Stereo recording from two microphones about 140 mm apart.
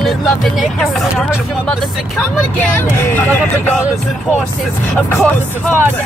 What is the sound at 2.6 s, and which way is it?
Speech, 20° left (ahead or behind).